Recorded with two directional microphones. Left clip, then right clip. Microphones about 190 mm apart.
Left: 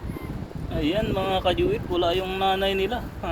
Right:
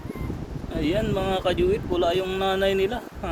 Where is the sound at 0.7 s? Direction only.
20° right (ahead or behind).